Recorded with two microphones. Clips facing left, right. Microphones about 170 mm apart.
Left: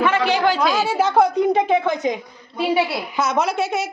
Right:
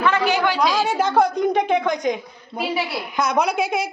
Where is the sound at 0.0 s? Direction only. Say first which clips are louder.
Left 1 dB; 25° left (ahead or behind).